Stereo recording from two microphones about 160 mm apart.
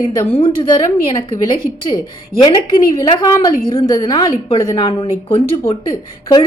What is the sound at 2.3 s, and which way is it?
Speech, 20° right (ahead or behind).